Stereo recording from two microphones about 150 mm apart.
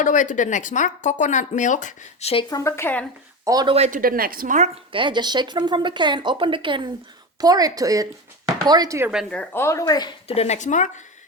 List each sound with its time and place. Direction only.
0.0 s speech: 60° left (ahead or behind)
2.3 s speech: 30° left (ahead or behind); by 3.1 s 10° left (ahead or behind)
3.4 s speech: 25° right (ahead or behind)
3.8 s speech: 50° right (ahead or behind)
4.0 s a woman's voice: 75° right (ahead or behind); by 4.8 s 50° right (ahead or behind)
4.9 s speech: 35° right (ahead or behind)
9.3 s speech: 10° left (ahead or behind); by 10.2 s 30° left (ahead or behind)
10.2 s speech: 45° left (ahead or behind)